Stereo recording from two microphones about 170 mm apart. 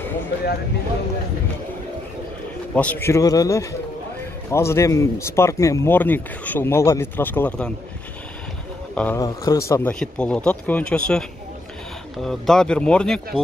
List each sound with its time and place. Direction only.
2.7 s speech: 10° left (ahead or behind)
8.9 s speech: 10° left (ahead or behind)
9.2 s speech: 20° left (ahead or behind)
12.3 s speech: 5° left (ahead or behind)